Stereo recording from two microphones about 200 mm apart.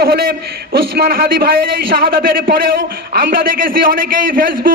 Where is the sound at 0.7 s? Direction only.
50° right (ahead or behind).